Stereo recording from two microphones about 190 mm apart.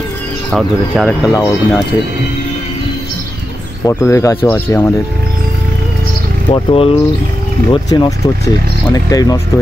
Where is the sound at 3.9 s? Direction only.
15° left (ahead or behind).